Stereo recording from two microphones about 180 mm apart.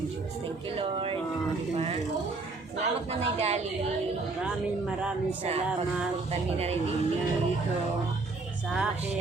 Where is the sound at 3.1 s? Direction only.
35° right (ahead or behind).